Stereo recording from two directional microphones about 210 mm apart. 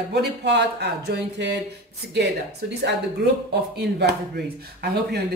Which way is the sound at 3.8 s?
50° right (ahead or behind).